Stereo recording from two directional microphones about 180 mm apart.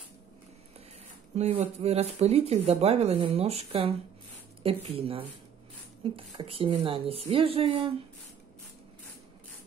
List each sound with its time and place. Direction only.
1.3 s speech: 35° right (ahead or behind)